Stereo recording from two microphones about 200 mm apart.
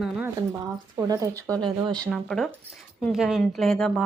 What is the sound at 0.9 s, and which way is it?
Speech, 15° right (ahead or behind).